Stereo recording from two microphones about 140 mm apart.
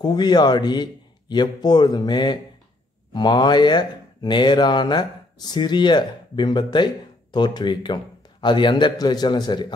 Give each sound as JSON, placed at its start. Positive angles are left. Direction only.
{"t": 0.0, "sound": "speech", "side_deg": 30}